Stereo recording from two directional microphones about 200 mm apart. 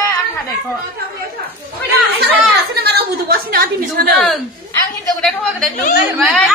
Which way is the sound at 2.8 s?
50° right (ahead or behind).